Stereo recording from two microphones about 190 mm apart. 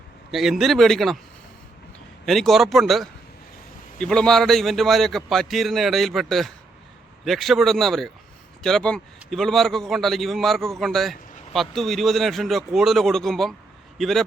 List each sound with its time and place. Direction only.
0.3 s a man's voice: centre (ahead or behind)
2.2 s a man's voice: centre (ahead or behind)